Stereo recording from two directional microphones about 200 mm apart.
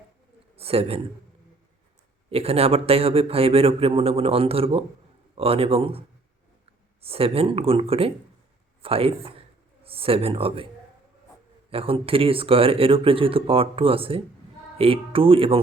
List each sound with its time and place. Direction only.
0.5 s a man's voice: 30° right (ahead or behind)
2.3 s a man's voice: 30° right (ahead or behind)
7.0 s a man's voice: 30° right (ahead or behind)
11.7 s a man's voice: 30° right (ahead or behind)